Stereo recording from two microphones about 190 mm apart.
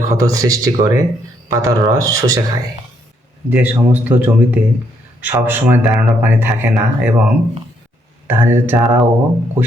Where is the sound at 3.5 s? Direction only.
10° right (ahead or behind).